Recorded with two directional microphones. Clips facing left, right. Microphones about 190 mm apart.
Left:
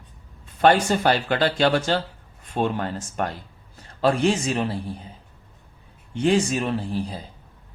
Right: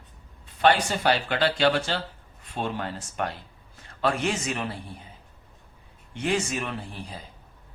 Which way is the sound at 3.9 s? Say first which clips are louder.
Left 6 dB; 35° left (ahead or behind).